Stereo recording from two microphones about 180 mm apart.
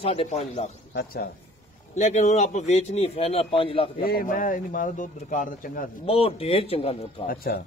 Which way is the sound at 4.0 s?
55° left (ahead or behind).